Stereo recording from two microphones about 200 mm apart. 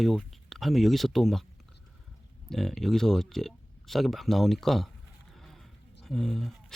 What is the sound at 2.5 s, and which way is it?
Speech, centre (ahead or behind).